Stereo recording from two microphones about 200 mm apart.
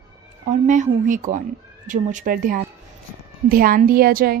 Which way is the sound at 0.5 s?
40° right (ahead or behind).